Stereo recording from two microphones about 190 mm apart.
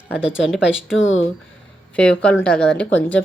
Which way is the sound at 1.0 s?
85° left.